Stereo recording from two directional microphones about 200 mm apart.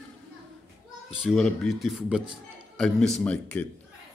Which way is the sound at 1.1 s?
Centre (ahead or behind).